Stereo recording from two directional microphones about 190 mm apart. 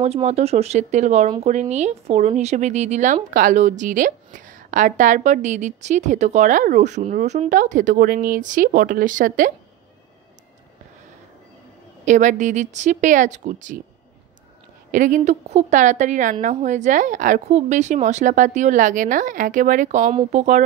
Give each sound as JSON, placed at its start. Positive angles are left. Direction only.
{"t": 0.0, "sound": "a woman's voice", "side_deg": -35}
{"t": 12.0, "sound": "a woman's voice", "side_deg": -40}
{"t": 14.9, "sound": "a woman's voice", "side_deg": -45}